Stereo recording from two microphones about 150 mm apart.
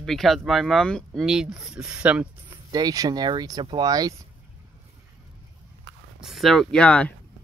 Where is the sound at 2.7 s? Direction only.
25° right (ahead or behind).